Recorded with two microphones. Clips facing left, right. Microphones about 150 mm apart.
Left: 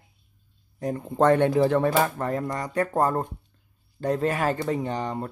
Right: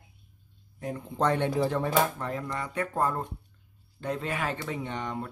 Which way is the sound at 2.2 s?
45° left (ahead or behind).